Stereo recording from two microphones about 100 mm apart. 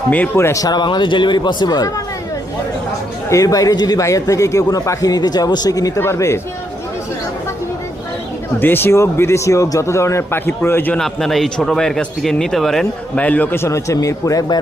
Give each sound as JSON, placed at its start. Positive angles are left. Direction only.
{"t": 0.1, "sound": "speech", "side_deg": 20}
{"t": 0.6, "sound": "speech", "side_deg": 45}
{"t": 3.2, "sound": "a man's voice", "side_deg": 35}
{"t": 6.0, "sound": "speech", "side_deg": 25}
{"t": 8.5, "sound": "speech", "side_deg": 20}
{"t": 10.9, "sound": "a man's voice", "side_deg": 5}
{"t": 13.2, "sound": "a man's voice", "side_deg": 15}